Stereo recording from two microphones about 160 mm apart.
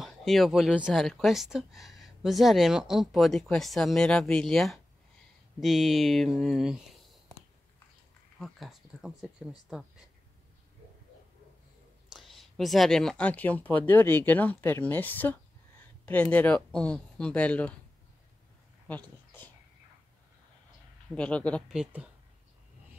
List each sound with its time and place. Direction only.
0.0 s speech: centre (ahead or behind)
8.4 s speech: centre (ahead or behind)
12.1 s speech: centre (ahead or behind)
18.9 s a sound: 10° left (ahead or behind)
21.1 s speech: 5° left (ahead or behind)
21.7 s speech: 10° right (ahead or behind)